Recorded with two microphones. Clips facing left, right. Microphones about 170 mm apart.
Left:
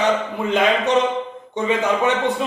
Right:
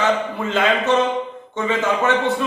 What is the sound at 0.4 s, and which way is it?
A man's voice, 15° left (ahead or behind).